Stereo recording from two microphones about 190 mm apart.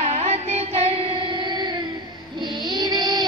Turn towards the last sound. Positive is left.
turn(degrees=-20)  # may be behind; listen again after turning